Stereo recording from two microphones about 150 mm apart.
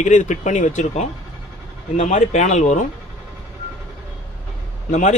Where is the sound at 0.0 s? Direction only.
55° left (ahead or behind).